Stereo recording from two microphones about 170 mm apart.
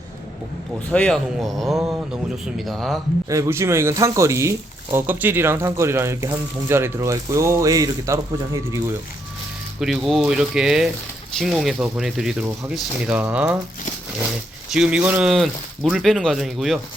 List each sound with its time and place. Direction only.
0.9 s speech: 5° left (ahead or behind)
3.2 s speech: 20° right (ahead or behind)
9.8 s speech: centre (ahead or behind)
14.7 s speech: 5° right (ahead or behind)